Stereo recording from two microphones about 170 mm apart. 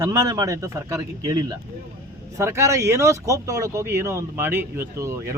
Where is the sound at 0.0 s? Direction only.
15° right (ahead or behind).